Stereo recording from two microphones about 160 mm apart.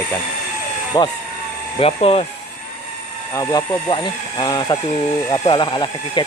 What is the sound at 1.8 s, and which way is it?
Speech, 35° left (ahead or behind).